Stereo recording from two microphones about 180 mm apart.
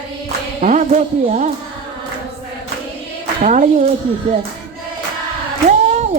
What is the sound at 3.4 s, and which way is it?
Speech, 45° right (ahead or behind).